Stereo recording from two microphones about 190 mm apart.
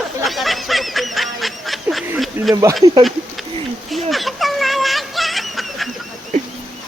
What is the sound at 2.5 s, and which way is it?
Speech, 15° right (ahead or behind).